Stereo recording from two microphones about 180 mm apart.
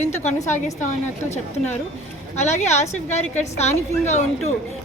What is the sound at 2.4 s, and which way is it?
A woman's voice, 40° left (ahead or behind).